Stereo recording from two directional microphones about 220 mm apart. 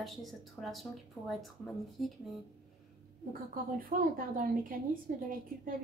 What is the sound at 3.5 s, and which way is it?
A woman's voice, 40° right (ahead or behind).